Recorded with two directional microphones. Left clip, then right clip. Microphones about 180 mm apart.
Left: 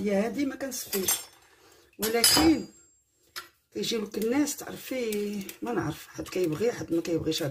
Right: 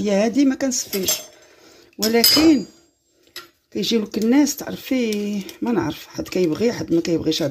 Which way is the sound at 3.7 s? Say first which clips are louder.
Right 9 dB; 35° right (ahead or behind).